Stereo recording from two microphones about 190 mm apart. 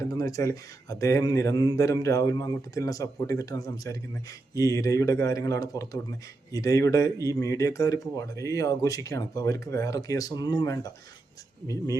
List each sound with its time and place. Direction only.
0.0 s speech: 20° left (ahead or behind)